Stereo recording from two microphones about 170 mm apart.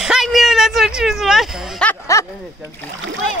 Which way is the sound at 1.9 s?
20° left (ahead or behind).